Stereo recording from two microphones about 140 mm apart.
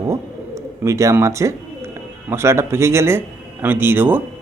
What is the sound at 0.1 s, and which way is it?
Bird, 20° right (ahead or behind).